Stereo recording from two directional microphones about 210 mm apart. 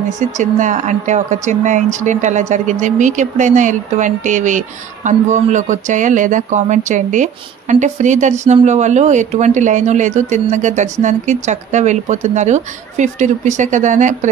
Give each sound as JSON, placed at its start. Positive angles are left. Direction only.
{"t": 0.4, "sound": "speech", "side_deg": -35}